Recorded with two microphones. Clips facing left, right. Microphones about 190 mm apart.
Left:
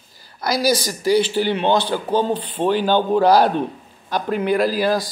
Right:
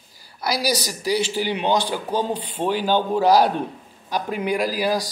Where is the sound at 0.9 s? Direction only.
5° right (ahead or behind).